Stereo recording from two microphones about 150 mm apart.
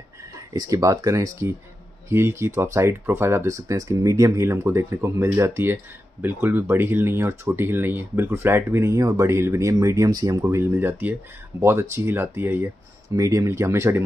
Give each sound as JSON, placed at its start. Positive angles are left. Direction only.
{"t": 0.2, "sound": "speech", "side_deg": -20}